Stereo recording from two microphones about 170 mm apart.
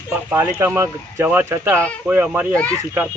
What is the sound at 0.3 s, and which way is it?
Speech, 15° right (ahead or behind).